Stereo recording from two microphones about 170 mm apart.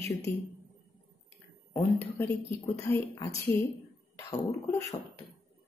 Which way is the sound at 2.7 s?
15° left (ahead or behind).